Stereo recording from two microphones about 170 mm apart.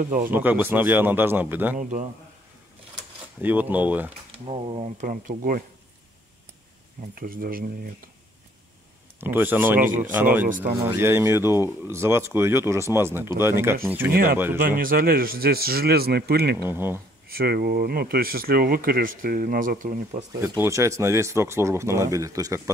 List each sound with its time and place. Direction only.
0.0 s speech: 50° right (ahead or behind)
0.3 s speech: 10° right (ahead or behind)
1.8 s speech: 50° right (ahead or behind)
3.3 s speech: 10° right (ahead or behind)
4.5 s speech: 35° right (ahead or behind)
5.0 s speech: 50° right (ahead or behind)
7.2 s speech: 60° right (ahead or behind)
9.2 s speech: 10° right (ahead or behind)
9.8 s speech: 50° right (ahead or behind)
11.0 s speech: 15° right (ahead or behind)
14.1 s speech: 65° right (ahead or behind)
16.6 s speech: 15° right (ahead or behind)
17.3 s speech: 60° right (ahead or behind)
20.4 s speech: 15° right (ahead or behind)